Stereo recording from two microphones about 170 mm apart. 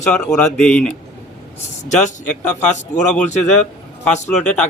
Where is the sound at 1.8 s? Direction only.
45° left (ahead or behind).